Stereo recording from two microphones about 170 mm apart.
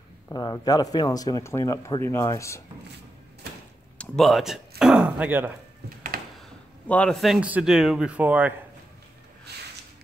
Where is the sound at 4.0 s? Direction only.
Centre (ahead or behind).